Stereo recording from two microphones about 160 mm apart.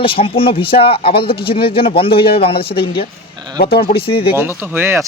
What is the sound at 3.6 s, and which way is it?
Speech, 75° left (ahead or behind).